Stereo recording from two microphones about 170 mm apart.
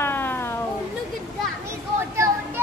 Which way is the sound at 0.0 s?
10° left (ahead or behind).